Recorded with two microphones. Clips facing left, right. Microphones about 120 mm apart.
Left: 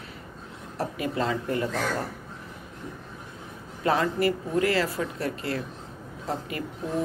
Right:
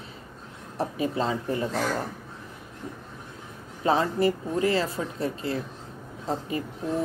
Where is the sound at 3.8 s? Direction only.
25° right (ahead or behind).